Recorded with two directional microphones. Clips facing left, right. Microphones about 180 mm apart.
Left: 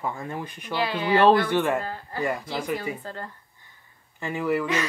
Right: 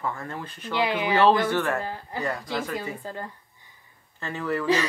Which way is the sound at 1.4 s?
15° left (ahead or behind).